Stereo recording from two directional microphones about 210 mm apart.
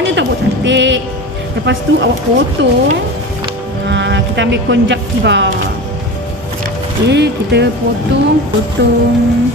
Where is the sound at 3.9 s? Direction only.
60° right (ahead or behind).